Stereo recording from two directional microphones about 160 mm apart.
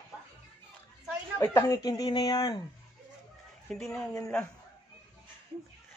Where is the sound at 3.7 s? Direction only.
5° left (ahead or behind).